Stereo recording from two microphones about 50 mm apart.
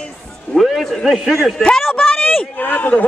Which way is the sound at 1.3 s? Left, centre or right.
Centre.